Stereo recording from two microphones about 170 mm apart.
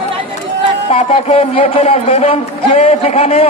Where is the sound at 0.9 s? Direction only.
35° left (ahead or behind).